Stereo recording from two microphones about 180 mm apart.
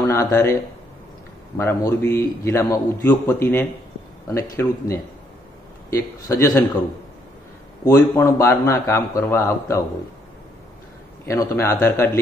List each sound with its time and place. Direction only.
0.0 s speech: 15° left (ahead or behind)
1.6 s a man's voice: 15° left (ahead or behind)
7.8 s a man's voice: 15° left (ahead or behind)
11.2 s a man's voice: 15° left (ahead or behind)